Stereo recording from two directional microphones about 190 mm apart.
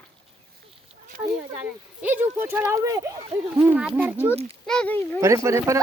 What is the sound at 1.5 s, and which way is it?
Speech, 10° right (ahead or behind).